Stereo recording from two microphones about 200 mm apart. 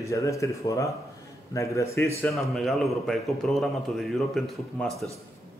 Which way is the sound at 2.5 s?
Centre (ahead or behind).